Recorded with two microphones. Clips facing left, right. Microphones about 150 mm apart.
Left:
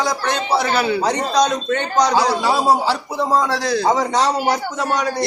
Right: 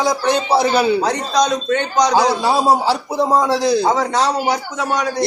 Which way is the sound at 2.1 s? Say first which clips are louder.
Right 2 dB; 15° right (ahead or behind).